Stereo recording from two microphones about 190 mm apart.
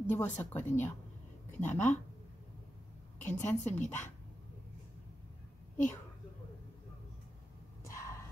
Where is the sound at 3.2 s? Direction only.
40° left (ahead or behind).